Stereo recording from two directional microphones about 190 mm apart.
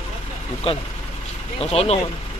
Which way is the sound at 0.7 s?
30° left (ahead or behind).